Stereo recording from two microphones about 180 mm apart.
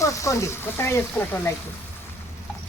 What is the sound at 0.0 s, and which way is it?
Speech, 15° left (ahead or behind).